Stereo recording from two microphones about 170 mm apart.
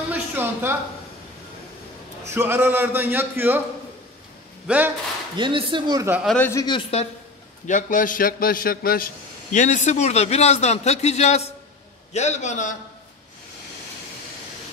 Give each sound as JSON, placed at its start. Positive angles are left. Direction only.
{"t": 0.1, "sound": "a sound", "side_deg": -10}
{"t": 2.3, "sound": "speech", "side_deg": -15}
{"t": 4.6, "sound": "speech", "side_deg": -10}
{"t": 5.4, "sound": "speech", "side_deg": -30}
{"t": 6.2, "sound": "speech", "side_deg": 10}
{"t": 6.5, "sound": "speech", "side_deg": 25}
{"t": 7.6, "sound": "a man's voice", "side_deg": 50}